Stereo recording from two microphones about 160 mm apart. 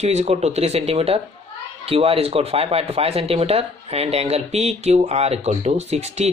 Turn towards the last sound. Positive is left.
turn(degrees=-45)  # may be behind; listen again after turning